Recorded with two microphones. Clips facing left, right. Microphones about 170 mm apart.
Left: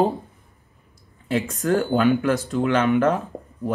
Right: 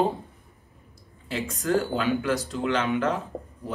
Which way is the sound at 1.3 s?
55° left (ahead or behind).